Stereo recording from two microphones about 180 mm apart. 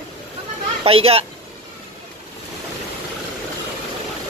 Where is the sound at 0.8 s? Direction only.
35° right (ahead or behind).